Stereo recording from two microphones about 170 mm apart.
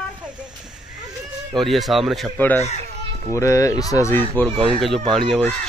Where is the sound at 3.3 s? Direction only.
15° left (ahead or behind).